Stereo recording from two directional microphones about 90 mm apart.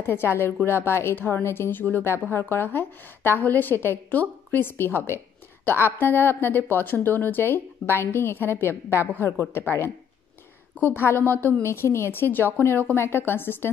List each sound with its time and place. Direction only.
0.0 s a woman's voice: 25° left (ahead or behind)